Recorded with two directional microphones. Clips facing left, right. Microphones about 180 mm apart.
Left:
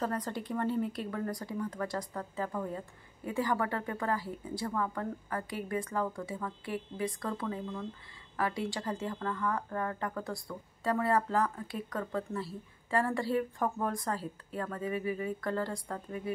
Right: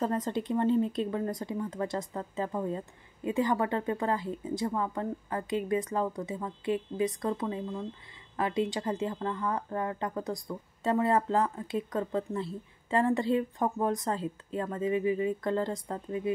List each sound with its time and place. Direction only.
0.0 s speech: 20° right (ahead or behind)